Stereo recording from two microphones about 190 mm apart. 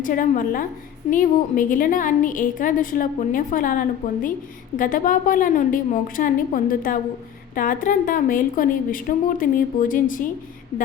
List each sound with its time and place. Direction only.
0.0 s a woman's voice: 45° left (ahead or behind)